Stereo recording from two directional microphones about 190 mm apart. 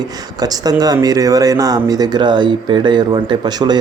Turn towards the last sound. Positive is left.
turn(degrees=-20)  # may be behind; listen again after turning